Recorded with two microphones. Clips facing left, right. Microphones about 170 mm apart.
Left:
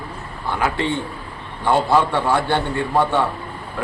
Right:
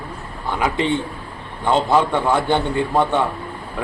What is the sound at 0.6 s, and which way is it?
A man's voice, 20° right (ahead or behind).